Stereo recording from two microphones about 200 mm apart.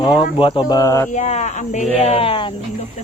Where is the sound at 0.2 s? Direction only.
25° left (ahead or behind).